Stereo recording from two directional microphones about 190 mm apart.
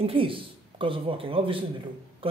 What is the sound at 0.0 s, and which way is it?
A man's voice, 30° right (ahead or behind).